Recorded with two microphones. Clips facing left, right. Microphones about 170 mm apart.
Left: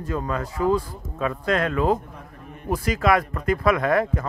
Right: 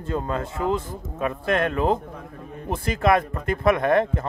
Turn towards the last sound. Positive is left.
turn(degrees=-25)  # may be behind; listen again after turning